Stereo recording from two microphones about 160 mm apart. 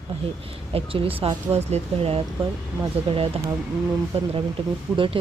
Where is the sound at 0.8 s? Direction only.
35° right (ahead or behind).